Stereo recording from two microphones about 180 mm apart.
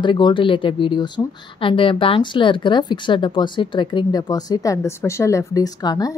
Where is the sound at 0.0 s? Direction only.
25° left (ahead or behind).